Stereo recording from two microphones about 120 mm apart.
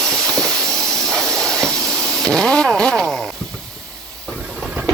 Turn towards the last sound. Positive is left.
turn(degrees=-10)  # may be behind; listen again after turning